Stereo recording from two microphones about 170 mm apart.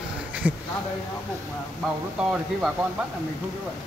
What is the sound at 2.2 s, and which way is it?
Speech, 5° right (ahead or behind).